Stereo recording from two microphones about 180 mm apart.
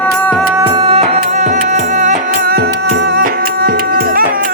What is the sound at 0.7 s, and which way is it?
Music, 30° right (ahead or behind).